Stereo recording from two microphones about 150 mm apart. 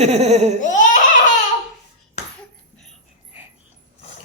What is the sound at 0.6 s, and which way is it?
Giggle, 55° left (ahead or behind).